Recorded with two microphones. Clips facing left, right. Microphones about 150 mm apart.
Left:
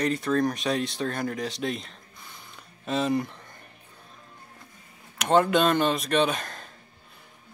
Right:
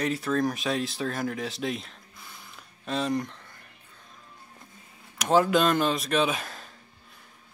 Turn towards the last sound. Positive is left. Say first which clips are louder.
# left 2 dB
turn(degrees=-5)  # may be behind; listen again after turning